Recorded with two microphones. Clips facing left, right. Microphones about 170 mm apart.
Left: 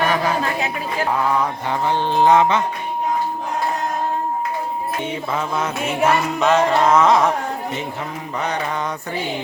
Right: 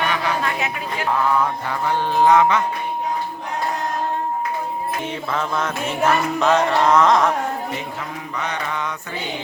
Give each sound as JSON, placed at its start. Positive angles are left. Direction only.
{"t": 0.0, "sound": "a sound", "side_deg": 40}
{"t": 1.6, "sound": "wind chime", "side_deg": 25}
{"t": 5.3, "sound": "music", "side_deg": 10}
{"t": 8.4, "sound": "mantra", "side_deg": 35}